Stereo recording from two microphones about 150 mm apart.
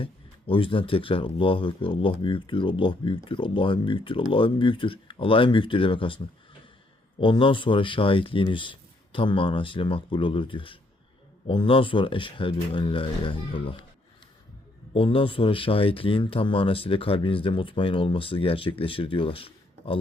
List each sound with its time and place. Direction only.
0.0 s speech: 35° left (ahead or behind)
14.9 s speech: 35° left (ahead or behind)